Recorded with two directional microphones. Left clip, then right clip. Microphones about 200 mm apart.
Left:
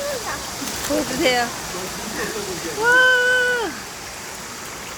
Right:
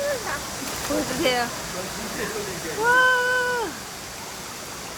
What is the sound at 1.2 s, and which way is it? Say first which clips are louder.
Speech: left 4 dB; 15° left (ahead or behind).